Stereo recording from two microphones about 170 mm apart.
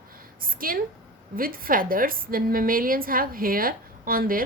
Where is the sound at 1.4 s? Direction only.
55° right (ahead or behind).